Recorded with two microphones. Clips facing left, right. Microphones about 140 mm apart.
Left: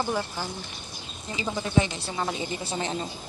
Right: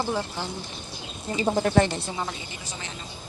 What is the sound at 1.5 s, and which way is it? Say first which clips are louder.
Speech: right 3 dB; 60° right (ahead or behind).